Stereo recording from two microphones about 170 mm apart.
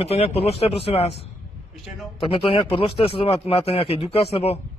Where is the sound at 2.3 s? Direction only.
30° left (ahead or behind).